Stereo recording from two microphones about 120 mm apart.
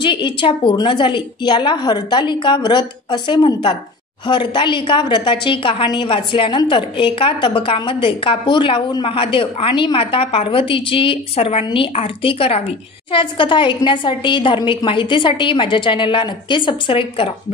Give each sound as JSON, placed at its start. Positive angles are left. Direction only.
{"t": 0.0, "sound": "a woman's voice", "side_deg": 45}